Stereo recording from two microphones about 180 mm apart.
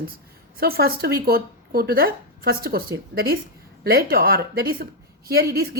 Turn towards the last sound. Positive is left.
turn(degrees=-60)  # may be behind; listen again after turning